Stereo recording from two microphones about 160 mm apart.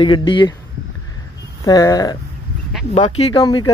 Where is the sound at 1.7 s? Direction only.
20° left (ahead or behind).